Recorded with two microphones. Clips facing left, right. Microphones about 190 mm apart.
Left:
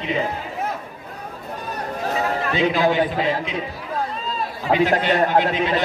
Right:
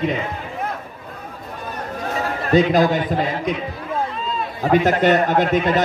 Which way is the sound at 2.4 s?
40° right (ahead or behind).